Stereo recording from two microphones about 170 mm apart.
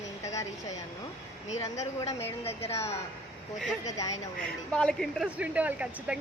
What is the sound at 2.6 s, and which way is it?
Speech, 40° left (ahead or behind).